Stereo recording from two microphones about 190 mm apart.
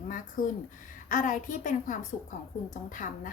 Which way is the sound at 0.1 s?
45° left (ahead or behind).